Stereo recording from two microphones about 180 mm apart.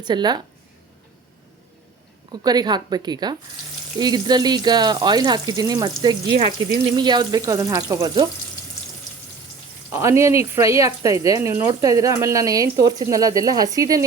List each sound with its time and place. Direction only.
0.0 s speech: 25° right (ahead or behind)
2.3 s speech: 20° right (ahead or behind)
9.9 s speech: 15° right (ahead or behind)